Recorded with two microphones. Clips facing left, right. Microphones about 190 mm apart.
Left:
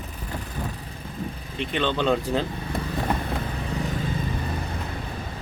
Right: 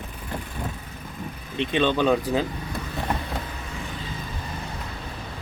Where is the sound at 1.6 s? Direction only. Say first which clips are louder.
Right 3 dB; 15° right (ahead or behind).